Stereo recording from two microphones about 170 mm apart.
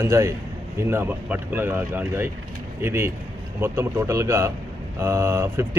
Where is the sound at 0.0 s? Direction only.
15° right (ahead or behind).